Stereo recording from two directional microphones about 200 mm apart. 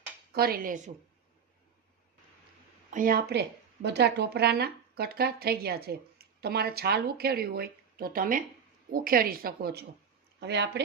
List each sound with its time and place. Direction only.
0.3 s speech: 50° right (ahead or behind)
2.9 s speech: 45° right (ahead or behind)